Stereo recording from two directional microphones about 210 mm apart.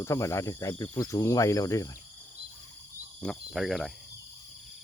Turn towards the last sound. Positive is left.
turn(degrees=0)  # may be behind; listen again after turning